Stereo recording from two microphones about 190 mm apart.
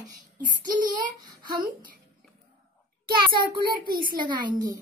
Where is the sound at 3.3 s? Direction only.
50° right (ahead or behind).